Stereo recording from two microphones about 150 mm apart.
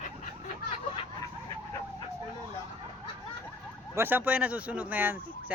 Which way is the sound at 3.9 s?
15° right (ahead or behind).